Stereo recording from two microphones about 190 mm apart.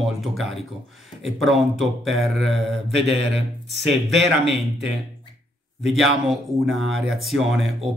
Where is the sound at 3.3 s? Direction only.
65° right (ahead or behind).